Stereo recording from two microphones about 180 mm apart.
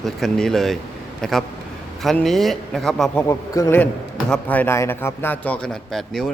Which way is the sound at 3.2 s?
15° left (ahead or behind).